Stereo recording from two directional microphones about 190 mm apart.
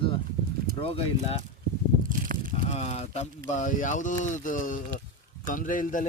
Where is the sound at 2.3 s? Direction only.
50° right (ahead or behind).